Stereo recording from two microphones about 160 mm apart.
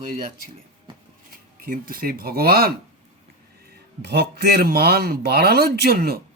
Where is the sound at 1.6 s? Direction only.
65° right (ahead or behind).